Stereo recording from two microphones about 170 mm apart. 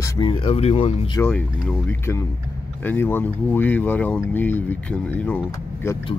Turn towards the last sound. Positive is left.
turn(degrees=10)  # may be behind; listen again after turning